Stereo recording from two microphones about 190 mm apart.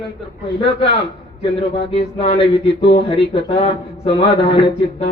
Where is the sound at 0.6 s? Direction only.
30° left (ahead or behind).